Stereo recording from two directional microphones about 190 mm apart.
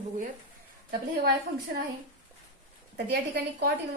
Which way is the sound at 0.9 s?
55° right (ahead or behind).